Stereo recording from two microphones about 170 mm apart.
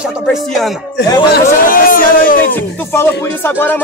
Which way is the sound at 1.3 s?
55° left (ahead or behind).